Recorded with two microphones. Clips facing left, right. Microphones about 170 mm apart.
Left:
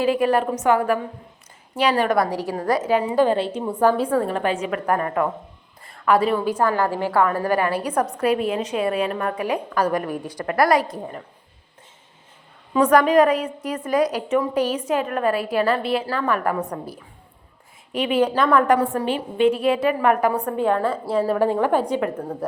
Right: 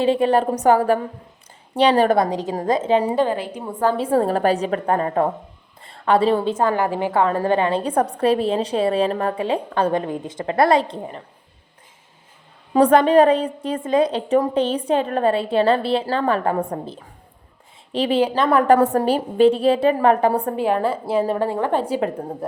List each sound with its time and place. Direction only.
0.0 s a woman's voice: 30° right (ahead or behind)
2.2 s a woman's voice: 20° right (ahead or behind)
3.3 s a woman's voice: 25° left (ahead or behind)
4.0 s a woman's voice: 30° right (ahead or behind)
12.7 s a woman's voice: 30° right (ahead or behind)
21.6 s a woman's voice: 5° left (ahead or behind)
21.9 s a woman's voice: 25° right (ahead or behind)